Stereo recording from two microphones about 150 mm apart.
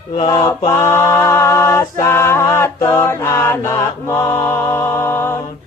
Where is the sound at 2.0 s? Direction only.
20° left (ahead or behind).